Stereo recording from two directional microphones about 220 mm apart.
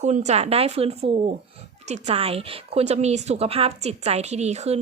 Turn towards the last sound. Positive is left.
turn(degrees=-30)  # may be behind; listen again after turning